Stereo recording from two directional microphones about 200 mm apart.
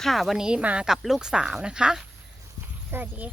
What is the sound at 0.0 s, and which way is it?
Speech, centre (ahead or behind).